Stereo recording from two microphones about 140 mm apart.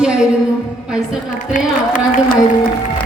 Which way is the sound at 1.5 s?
65° left (ahead or behind).